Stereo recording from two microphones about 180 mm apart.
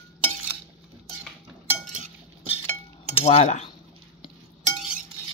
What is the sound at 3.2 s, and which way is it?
Cutlery, 35° left (ahead or behind).